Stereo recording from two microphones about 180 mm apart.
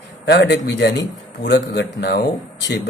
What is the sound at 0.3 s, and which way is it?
Speech, 75° left (ahead or behind).